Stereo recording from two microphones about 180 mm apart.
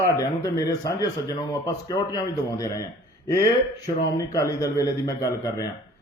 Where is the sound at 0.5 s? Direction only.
20° left (ahead or behind).